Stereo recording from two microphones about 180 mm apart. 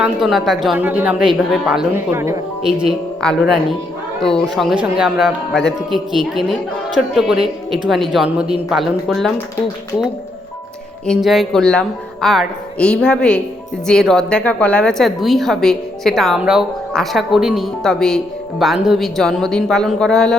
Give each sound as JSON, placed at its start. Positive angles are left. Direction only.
{"t": 0.0, "sound": "a woman's voice", "side_deg": 0}
{"t": 3.2, "sound": "a woman's voice", "side_deg": 5}
{"t": 11.0, "sound": "a woman's voice", "side_deg": 0}